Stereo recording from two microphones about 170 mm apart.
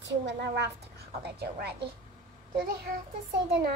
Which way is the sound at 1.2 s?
75° right (ahead or behind).